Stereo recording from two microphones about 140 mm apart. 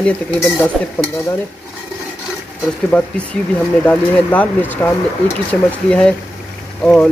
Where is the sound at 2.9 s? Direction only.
5° left (ahead or behind).